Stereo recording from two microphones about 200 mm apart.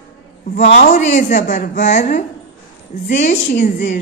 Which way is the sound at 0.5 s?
40° left (ahead or behind).